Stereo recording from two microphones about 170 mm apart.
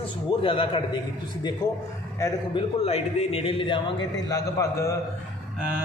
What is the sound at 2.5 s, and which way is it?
A man's voice, 35° left (ahead or behind).